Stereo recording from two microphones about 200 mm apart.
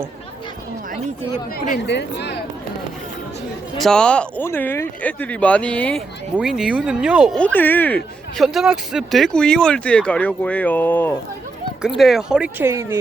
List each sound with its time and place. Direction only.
1.5 s speech: 45° left (ahead or behind)
3.8 s speech: 5° left (ahead or behind)
7.3 s speech: 10° left (ahead or behind)
11.9 s speech: centre (ahead or behind)